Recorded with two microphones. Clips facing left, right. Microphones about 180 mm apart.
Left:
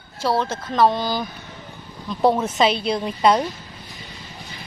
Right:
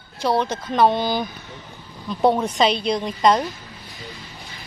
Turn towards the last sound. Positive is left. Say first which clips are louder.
# even
turn(degrees=10)  # may be behind; listen again after turning